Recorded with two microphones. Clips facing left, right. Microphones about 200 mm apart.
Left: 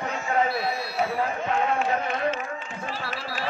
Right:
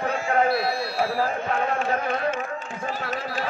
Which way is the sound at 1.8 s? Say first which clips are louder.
Right 1 dB; 50° right (ahead or behind).